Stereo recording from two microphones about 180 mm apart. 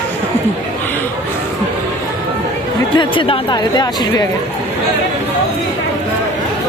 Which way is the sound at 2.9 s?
30° left (ahead or behind).